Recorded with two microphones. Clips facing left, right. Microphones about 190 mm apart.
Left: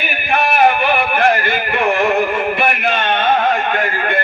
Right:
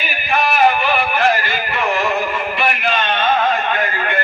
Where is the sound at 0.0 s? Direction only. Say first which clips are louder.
Left 1 dB; 55° left (ahead or behind).